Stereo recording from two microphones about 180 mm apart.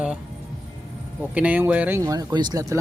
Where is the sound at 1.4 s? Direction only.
10° right (ahead or behind).